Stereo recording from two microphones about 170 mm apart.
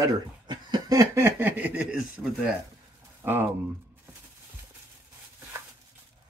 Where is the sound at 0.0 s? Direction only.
25° right (ahead or behind); by 2.5 s 5° right (ahead or behind).